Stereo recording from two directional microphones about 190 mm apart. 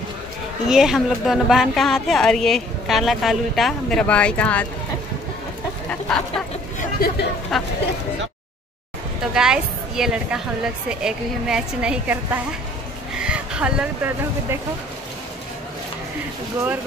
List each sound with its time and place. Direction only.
0.7 s speech: 5° right (ahead or behind)
5.9 s a sound: 5° left (ahead or behind)
6.8 s speech: 55° left (ahead or behind)
7.5 s speech: centre (ahead or behind)
9.3 s speech: 5° right (ahead or behind)